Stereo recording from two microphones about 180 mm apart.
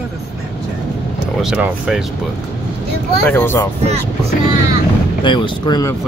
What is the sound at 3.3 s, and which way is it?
Speech, 15° left (ahead or behind).